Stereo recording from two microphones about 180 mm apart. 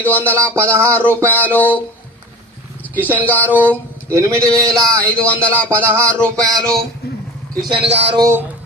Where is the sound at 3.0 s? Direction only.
10° right (ahead or behind).